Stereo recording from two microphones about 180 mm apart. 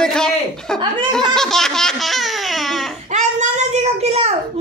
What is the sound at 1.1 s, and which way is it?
Laughter, 5° left (ahead or behind).